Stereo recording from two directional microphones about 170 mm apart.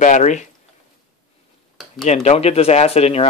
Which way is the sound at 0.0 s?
45° left (ahead or behind).